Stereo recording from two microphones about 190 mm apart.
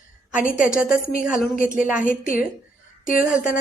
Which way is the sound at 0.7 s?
5° right (ahead or behind).